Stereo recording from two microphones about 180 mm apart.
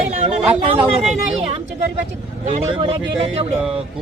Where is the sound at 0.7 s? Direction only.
5° right (ahead or behind).